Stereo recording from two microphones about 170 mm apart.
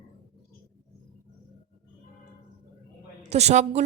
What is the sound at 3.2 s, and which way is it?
Speech, 40° right (ahead or behind).